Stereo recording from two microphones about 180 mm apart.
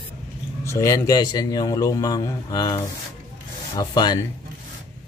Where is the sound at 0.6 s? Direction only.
15° left (ahead or behind).